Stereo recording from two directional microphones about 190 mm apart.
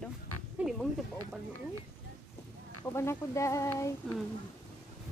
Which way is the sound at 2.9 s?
15° left (ahead or behind).